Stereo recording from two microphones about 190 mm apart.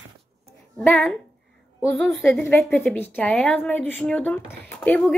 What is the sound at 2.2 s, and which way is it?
A woman's voice, 10° left (ahead or behind).